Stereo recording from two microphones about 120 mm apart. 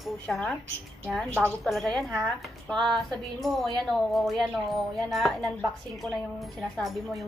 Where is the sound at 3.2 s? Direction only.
Centre (ahead or behind).